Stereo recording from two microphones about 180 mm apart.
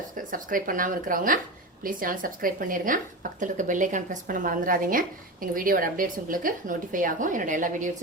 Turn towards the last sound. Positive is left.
turn(degrees=-45)  # may be behind; listen again after turning